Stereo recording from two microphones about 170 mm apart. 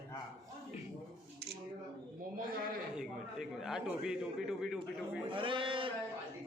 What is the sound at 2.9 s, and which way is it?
A man's voice, centre (ahead or behind).